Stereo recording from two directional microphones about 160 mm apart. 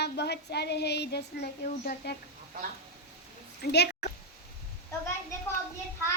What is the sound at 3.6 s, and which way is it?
Speech, 90° left.